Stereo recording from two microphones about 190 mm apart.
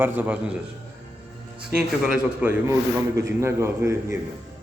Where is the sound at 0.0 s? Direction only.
10° right (ahead or behind).